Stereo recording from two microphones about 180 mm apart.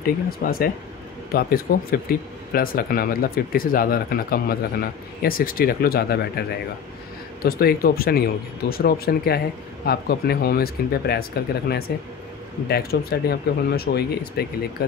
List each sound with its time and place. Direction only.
0.0 s speech: 55° left (ahead or behind)
7.4 s speech: 55° left (ahead or behind)